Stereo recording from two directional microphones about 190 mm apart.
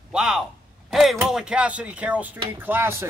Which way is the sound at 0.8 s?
Centre (ahead or behind).